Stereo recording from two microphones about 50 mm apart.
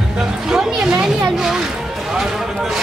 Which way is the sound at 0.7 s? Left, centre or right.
Centre.